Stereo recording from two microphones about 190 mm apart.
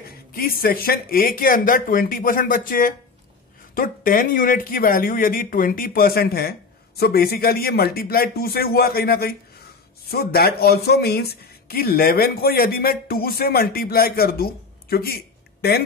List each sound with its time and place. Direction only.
0.3 s speech: 50° left (ahead or behind)